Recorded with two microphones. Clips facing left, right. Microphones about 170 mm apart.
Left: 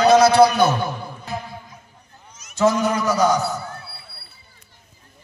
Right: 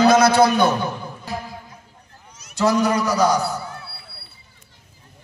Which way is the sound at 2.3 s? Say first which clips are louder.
Left 2 dB; 35° right (ahead or behind).